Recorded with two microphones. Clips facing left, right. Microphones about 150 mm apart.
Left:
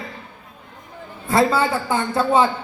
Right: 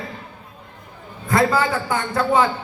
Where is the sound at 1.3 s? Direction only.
25° left (ahead or behind).